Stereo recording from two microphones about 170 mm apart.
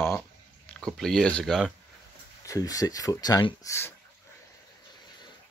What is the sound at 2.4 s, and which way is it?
Speech, 20° left (ahead or behind).